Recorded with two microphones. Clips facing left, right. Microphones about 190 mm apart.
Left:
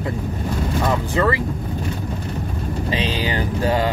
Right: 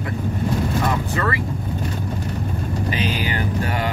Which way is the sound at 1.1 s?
25° left (ahead or behind).